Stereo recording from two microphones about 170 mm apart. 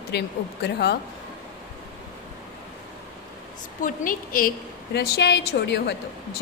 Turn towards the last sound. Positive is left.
turn(degrees=80)